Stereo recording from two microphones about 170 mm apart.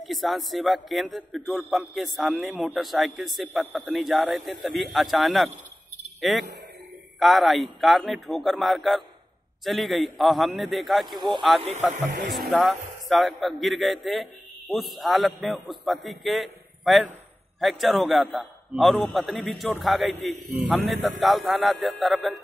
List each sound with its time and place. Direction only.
0.0 s a man's voice: centre (ahead or behind)
11.1 s speech: 30° right (ahead or behind)
12.3 s a man's voice: centre (ahead or behind)